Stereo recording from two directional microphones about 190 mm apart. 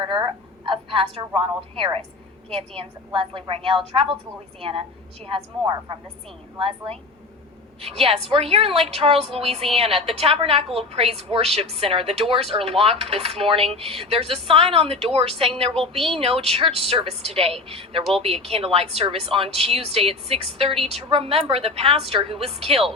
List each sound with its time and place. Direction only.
0.0 s a woman's voice: 25° right (ahead or behind)